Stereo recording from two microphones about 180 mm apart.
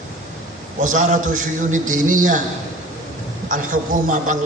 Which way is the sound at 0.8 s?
45° right (ahead or behind).